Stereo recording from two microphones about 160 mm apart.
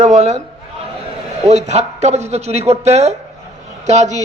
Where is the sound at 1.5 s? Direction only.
45° right (ahead or behind).